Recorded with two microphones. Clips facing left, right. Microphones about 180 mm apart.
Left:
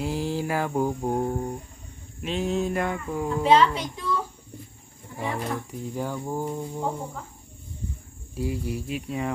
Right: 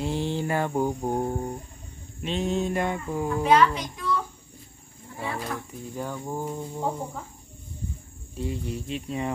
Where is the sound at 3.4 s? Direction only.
25° left (ahead or behind).